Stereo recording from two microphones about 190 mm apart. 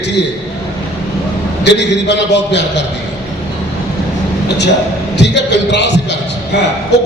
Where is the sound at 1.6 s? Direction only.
65° left (ahead or behind).